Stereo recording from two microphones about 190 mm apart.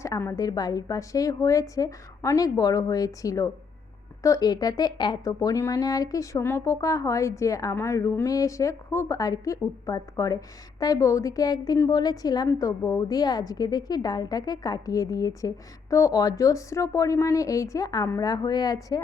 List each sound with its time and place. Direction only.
0.0 s a woman's voice: 15° left (ahead or behind)